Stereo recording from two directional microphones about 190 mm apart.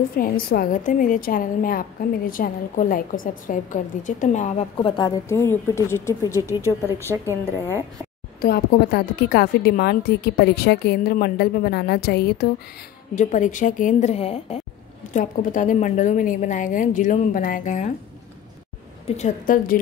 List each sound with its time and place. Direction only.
0.2 s a woman's voice: 50° left (ahead or behind)
4.7 s a woman's voice: 25° left (ahead or behind)
8.4 s a woman's voice: 55° left (ahead or behind)
13.1 s a woman's voice: 40° left (ahead or behind)
19.0 s a woman's voice: 40° left (ahead or behind)